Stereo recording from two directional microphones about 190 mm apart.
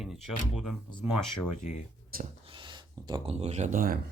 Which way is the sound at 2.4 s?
25° right (ahead or behind).